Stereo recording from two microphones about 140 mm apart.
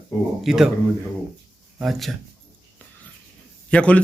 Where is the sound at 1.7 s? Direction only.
Centre (ahead or behind).